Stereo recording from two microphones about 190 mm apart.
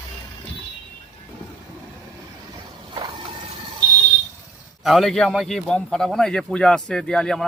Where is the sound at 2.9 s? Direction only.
25° right (ahead or behind).